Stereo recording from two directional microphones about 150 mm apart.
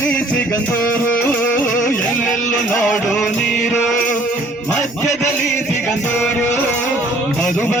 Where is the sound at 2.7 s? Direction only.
Centre (ahead or behind).